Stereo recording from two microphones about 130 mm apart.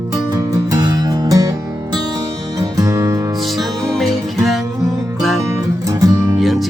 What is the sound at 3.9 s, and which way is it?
Music, centre (ahead or behind).